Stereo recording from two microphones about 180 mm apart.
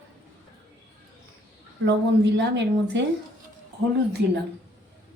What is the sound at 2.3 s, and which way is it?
Speech, 75° right (ahead or behind).